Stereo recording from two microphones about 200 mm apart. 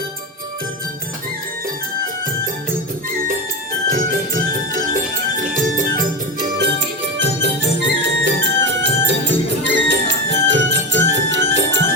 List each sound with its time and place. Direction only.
6.6 s music: 65° right (ahead or behind)